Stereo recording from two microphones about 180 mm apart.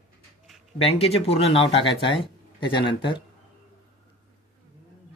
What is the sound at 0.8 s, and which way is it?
Speech, 35° left (ahead or behind).